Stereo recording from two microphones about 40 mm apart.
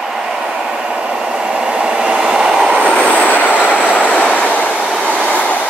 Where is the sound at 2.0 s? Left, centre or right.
Centre.